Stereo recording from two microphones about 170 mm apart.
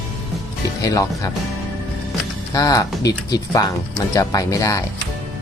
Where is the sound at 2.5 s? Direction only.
20° left (ahead or behind).